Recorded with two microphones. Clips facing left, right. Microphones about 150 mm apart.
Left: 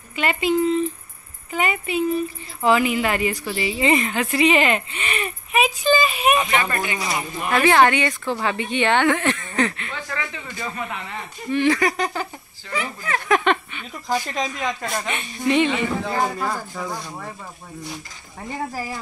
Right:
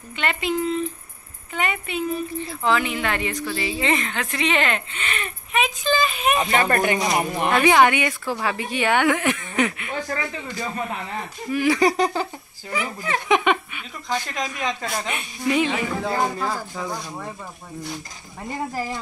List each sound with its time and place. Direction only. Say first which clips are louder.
0.1 s a woman's voice: left 4 dB; 5° left (ahead or behind)
6.3 s speech: right 1 dB; 35° right (ahead or behind)
7.2 s speech: right 5 dB; 70° right (ahead or behind)
7.6 s a woman's voice: left 1 dB; 10° right (ahead or behind)
9.9 s speech: right 3 dB; 35° right (ahead or behind)
11.5 s a woman's voice: left 2 dB; 5° right (ahead or behind)
12.7 s a woman's voice: even; 15° right (ahead or behind)
14.0 s a woman's voice: left 3 dB; 10° left (ahead or behind)
14.9 s speech: left 1 dB; centre (ahead or behind)
18.7 s a woman's voice: right 2 dB; 10° left (ahead or behind)